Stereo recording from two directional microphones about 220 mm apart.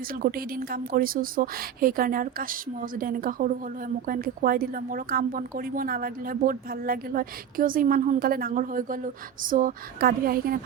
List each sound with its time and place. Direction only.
0.1 s a woman's voice: 40° right (ahead or behind)